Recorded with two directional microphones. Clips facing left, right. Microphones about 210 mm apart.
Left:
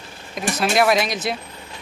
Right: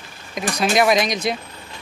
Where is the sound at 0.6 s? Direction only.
5° left (ahead or behind).